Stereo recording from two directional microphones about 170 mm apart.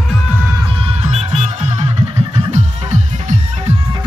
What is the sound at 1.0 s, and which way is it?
Music, 40° right (ahead or behind).